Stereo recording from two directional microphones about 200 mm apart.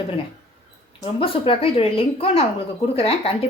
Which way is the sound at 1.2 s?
30° left (ahead or behind).